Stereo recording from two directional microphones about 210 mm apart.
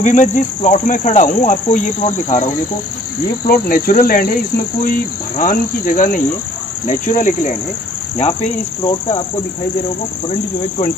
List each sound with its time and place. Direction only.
0.0 s cricket: 35° left (ahead or behind)
5.4 s cricket: 40° left (ahead or behind)